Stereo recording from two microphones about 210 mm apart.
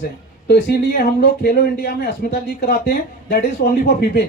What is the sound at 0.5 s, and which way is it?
Speech, 50° left (ahead or behind).